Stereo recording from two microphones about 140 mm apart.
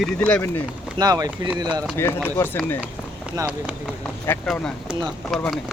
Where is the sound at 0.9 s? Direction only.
25° right (ahead or behind).